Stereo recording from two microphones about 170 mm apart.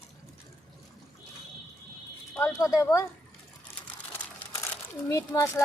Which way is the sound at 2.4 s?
20° left (ahead or behind).